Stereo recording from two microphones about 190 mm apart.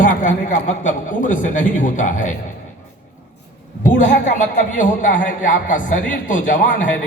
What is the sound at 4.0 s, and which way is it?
A man's voice, 40° left (ahead or behind).